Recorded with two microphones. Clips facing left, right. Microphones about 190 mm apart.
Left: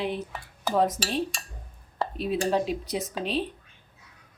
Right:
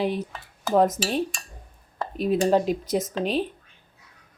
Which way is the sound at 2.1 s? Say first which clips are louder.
Right 6 dB; 45° right (ahead or behind).